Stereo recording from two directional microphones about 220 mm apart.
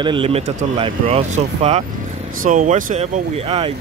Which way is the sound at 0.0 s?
25° right (ahead or behind).